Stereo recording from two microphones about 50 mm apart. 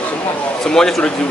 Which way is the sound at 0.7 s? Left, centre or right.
Centre.